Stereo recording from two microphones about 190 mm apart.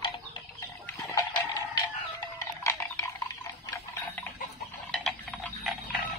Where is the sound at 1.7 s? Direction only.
20° left (ahead or behind).